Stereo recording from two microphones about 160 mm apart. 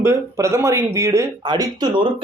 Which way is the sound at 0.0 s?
20° right (ahead or behind).